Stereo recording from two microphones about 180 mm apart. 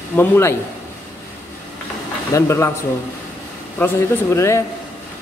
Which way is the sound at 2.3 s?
15° left (ahead or behind).